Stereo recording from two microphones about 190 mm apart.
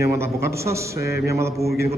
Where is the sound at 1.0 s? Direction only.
55° left (ahead or behind).